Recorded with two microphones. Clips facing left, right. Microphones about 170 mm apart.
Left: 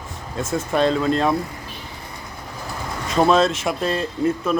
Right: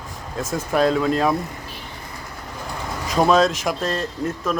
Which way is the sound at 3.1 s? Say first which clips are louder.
Even; centre (ahead or behind).